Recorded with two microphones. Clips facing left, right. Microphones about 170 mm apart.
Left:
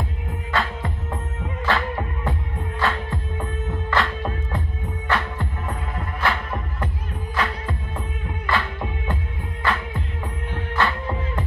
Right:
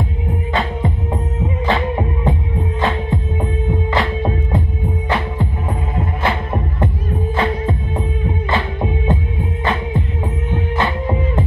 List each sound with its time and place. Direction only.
0.3 s music: 20° right (ahead or behind)